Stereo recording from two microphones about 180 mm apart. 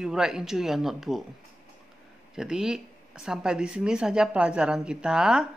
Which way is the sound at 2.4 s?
5° right (ahead or behind).